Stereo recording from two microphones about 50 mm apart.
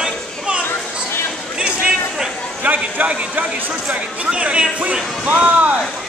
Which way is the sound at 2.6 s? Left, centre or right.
Right.